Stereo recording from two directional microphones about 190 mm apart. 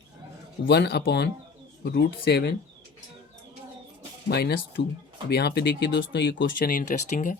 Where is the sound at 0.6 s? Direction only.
60° left (ahead or behind).